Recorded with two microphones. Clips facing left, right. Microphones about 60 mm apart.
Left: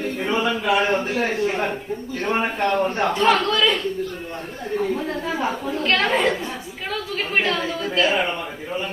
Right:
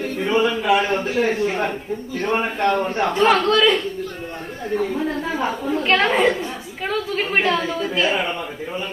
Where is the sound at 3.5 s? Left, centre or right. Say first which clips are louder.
Right 3 dB; centre.